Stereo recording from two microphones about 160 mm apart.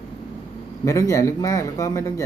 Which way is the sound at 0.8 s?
20° left (ahead or behind).